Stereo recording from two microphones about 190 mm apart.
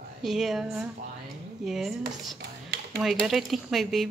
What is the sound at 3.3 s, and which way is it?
Speech, centre (ahead or behind).